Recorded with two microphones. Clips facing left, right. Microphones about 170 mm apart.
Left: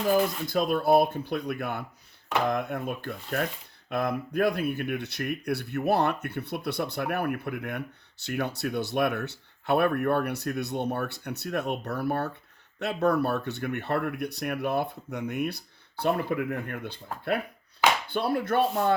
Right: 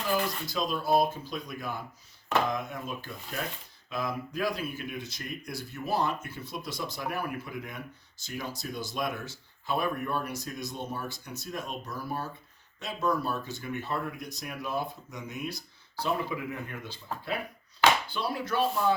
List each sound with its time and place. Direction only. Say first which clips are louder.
0.4 s speech: left 6 dB; 55° left (ahead or behind)